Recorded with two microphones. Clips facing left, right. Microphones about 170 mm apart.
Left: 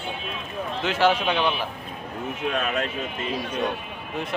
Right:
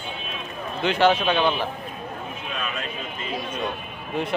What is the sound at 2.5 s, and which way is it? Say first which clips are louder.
Speech: left 3 dB; 65° left (ahead or behind).